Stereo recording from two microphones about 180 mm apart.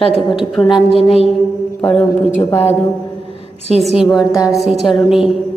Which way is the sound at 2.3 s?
40° left (ahead or behind).